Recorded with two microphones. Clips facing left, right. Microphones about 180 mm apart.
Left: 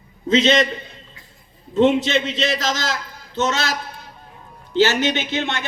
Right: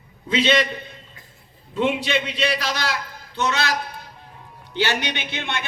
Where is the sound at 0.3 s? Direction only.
45° left (ahead or behind).